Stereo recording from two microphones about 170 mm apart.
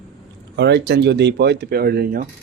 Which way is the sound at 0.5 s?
75° right (ahead or behind).